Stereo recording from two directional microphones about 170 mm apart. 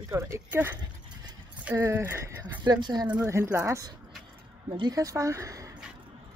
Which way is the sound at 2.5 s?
25° right (ahead or behind).